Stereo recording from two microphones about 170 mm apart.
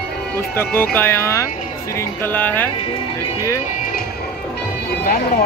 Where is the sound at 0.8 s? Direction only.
15° left (ahead or behind).